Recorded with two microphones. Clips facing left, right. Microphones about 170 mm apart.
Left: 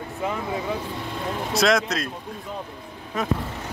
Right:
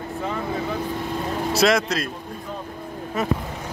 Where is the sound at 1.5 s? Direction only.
Centre (ahead or behind).